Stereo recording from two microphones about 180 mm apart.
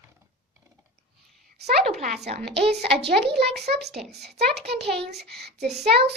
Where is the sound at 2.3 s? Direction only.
65° right (ahead or behind).